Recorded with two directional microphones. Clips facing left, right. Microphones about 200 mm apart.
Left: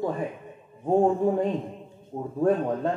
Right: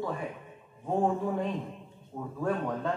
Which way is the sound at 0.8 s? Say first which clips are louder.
Left 7 dB; 45° left (ahead or behind).